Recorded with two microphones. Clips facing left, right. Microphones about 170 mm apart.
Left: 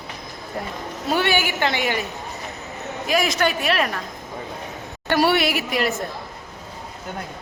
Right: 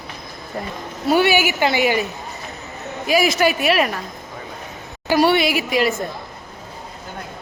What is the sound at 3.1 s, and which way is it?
Speech, 5° right (ahead or behind).